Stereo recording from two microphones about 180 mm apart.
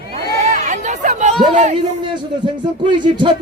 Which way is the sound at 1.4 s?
40° right (ahead or behind).